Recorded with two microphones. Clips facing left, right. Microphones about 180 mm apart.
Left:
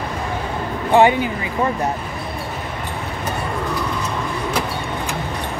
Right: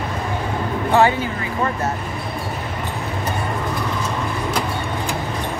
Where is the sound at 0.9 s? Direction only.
15° left (ahead or behind).